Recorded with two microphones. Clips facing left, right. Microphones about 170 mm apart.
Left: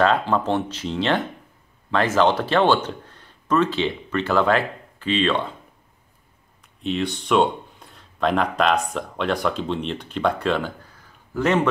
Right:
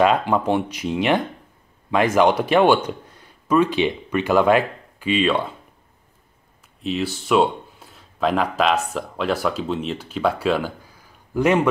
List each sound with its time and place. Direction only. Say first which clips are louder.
0.0 s speech: right 2 dB; 15° right (ahead or behind)
6.8 s speech: even; 5° right (ahead or behind)